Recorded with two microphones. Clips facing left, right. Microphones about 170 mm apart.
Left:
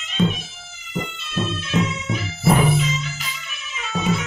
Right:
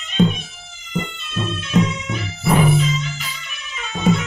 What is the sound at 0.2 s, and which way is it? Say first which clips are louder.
Cat: right 4 dB; 45° right (ahead or behind).